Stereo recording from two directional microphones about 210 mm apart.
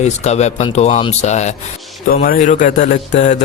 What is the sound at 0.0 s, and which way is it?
A man's voice, 30° left (ahead or behind).